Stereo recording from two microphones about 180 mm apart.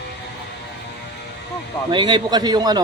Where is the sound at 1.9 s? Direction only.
25° right (ahead or behind).